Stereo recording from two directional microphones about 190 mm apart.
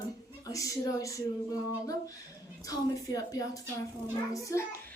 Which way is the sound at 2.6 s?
20° left (ahead or behind).